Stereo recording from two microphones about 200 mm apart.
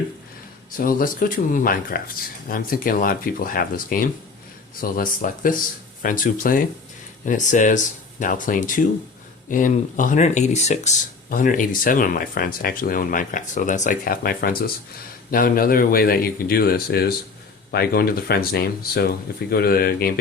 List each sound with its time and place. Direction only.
0.8 s speech: 45° left (ahead or behind)